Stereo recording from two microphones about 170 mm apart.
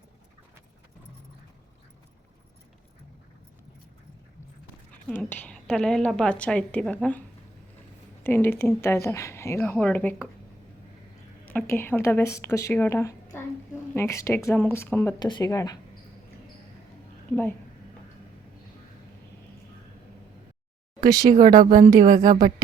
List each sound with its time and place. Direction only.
5.0 s a woman's voice: 10° left (ahead or behind)
8.2 s a woman's voice: 10° left (ahead or behind)
11.4 s a woman's voice: 10° left (ahead or behind)
15.2 s speech: 25° left (ahead or behind)
21.0 s speech: 20° right (ahead or behind)
21.3 s speech: 55° right (ahead or behind)